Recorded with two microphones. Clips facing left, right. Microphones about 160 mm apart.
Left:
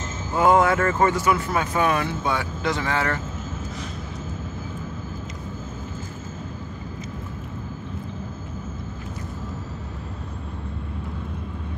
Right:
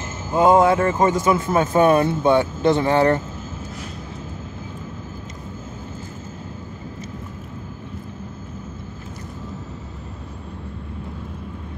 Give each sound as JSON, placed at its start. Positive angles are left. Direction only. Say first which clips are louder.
{"t": 0.3, "sound": "speech", "louder": "right 3 dB", "side_deg": -20}